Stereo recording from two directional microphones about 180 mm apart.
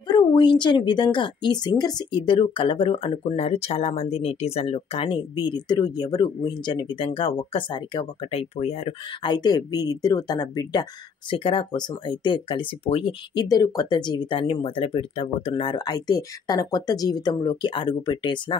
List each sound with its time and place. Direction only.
0.1 s speech: 25° left (ahead or behind)
9.2 s speech: 25° left (ahead or behind)